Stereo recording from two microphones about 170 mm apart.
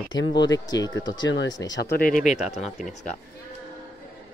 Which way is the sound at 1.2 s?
90° left.